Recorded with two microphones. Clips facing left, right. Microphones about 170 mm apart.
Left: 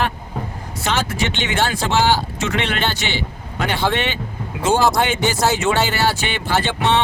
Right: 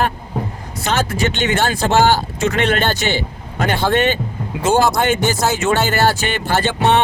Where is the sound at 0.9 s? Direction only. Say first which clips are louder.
Right 3 dB; 45° right (ahead or behind).